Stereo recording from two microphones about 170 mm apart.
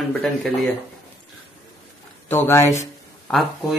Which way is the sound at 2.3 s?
15° left (ahead or behind).